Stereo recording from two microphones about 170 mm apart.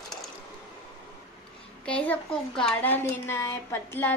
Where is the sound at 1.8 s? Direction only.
5° left (ahead or behind).